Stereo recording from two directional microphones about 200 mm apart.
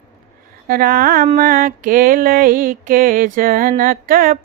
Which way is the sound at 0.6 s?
45° right (ahead or behind).